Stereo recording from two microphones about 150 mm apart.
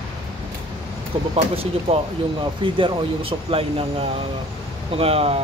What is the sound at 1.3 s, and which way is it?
Speech, 40° right (ahead or behind).